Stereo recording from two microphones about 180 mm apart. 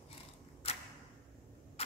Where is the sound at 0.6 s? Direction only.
30° left (ahead or behind).